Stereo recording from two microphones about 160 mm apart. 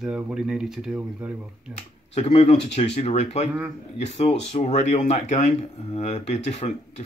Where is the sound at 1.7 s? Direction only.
40° left (ahead or behind).